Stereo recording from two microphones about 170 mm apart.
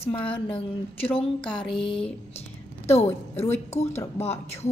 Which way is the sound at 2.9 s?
15° left (ahead or behind).